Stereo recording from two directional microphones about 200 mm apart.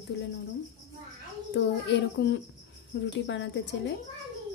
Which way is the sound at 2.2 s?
55° left (ahead or behind).